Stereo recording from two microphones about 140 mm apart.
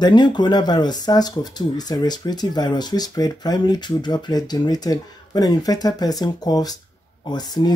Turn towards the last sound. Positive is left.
turn(degrees=30)  # may be behind; listen again after turning